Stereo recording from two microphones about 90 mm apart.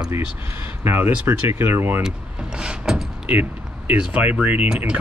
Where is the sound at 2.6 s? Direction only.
10° right (ahead or behind).